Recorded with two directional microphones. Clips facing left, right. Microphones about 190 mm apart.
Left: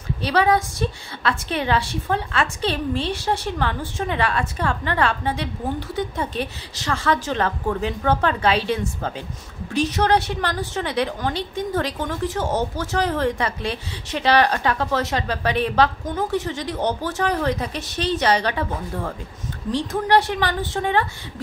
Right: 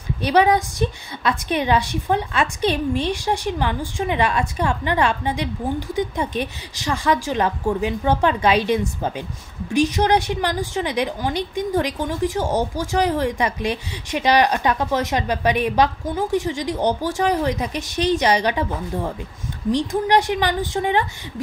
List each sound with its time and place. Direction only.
0.2 s a woman's voice: 15° right (ahead or behind)